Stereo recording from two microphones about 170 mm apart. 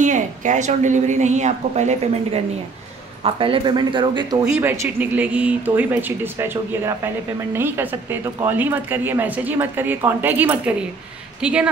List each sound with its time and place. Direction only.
0.0 s a woman's voice: 45° right (ahead or behind)
3.3 s speech: 30° right (ahead or behind)
4.5 s speech: 10° right (ahead or behind)